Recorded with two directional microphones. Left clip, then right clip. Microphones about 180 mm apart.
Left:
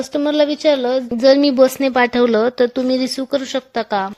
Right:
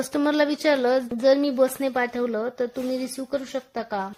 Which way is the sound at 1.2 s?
35° left (ahead or behind).